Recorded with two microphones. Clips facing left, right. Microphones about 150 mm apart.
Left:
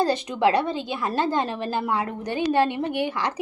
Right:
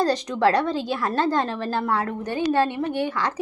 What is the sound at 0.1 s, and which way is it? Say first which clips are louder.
A woman's voice: right 1 dB; 5° left (ahead or behind).